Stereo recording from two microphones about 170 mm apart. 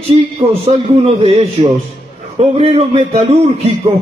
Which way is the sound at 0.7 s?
35° right (ahead or behind).